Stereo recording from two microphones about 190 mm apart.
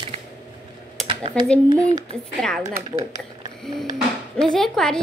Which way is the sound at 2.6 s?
20° right (ahead or behind).